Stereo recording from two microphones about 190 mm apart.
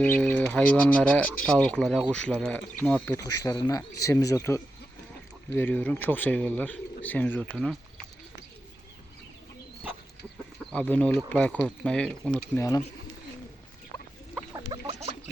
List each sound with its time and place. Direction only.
0.0 s speech: 10° left (ahead or behind)
10.6 s speech: 5° left (ahead or behind)
12.5 s speech: 15° left (ahead or behind)
14.5 s a sound: 25° right (ahead or behind)